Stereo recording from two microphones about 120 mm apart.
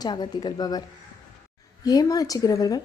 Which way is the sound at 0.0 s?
35° left (ahead or behind).